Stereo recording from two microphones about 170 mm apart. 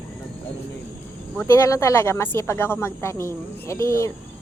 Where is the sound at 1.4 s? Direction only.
15° left (ahead or behind).